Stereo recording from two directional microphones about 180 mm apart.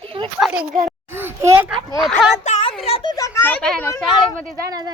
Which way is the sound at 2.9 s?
30° left (ahead or behind).